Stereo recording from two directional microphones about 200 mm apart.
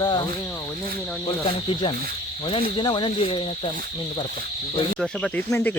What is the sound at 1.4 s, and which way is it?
Speech, 25° left (ahead or behind).